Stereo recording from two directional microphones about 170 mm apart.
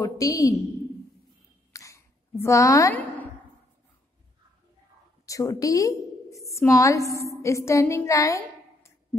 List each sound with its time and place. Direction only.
0.0 s a woman's voice: 20° left (ahead or behind)
1.7 s a sound: 20° left (ahead or behind)
5.2 s a woman's voice: 20° left (ahead or behind)